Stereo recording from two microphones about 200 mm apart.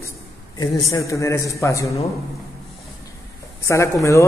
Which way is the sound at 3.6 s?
15° left (ahead or behind).